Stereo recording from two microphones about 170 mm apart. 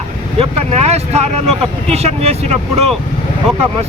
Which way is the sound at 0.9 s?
40° right (ahead or behind).